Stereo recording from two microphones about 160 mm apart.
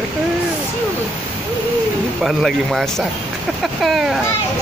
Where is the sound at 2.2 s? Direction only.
Centre (ahead or behind).